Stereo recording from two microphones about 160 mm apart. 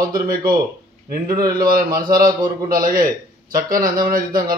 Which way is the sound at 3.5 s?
65° right (ahead or behind).